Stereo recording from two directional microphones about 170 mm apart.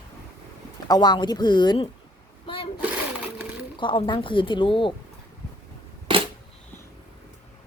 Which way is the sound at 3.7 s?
30° left (ahead or behind).